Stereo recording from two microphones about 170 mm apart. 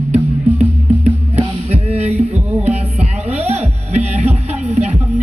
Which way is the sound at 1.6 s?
40° right (ahead or behind).